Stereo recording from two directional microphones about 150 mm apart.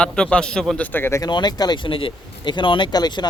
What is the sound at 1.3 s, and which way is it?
Speech, 30° left (ahead or behind).